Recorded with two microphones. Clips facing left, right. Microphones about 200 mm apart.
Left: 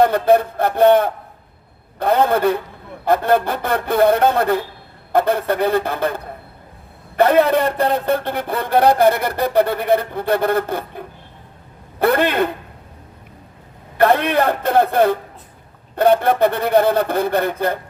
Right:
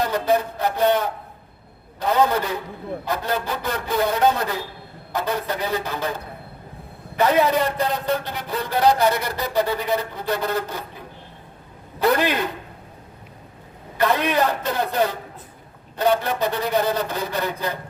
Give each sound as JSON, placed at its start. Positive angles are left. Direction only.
{"t": 0.0, "sound": "a man's voice", "side_deg": 55}
{"t": 14.0, "sound": "a man's voice", "side_deg": 55}